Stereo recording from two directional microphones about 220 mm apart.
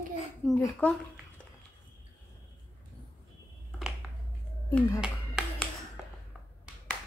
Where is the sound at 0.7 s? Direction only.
5° left (ahead or behind).